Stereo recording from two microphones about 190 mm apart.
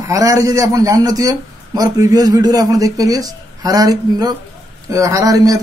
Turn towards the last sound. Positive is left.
turn(degrees=-20)  # may be behind; listen again after turning